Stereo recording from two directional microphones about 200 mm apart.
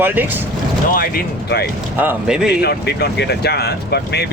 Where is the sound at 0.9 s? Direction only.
50° left (ahead or behind).